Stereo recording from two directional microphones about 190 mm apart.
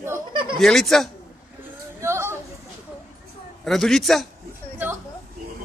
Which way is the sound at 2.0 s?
15° right (ahead or behind).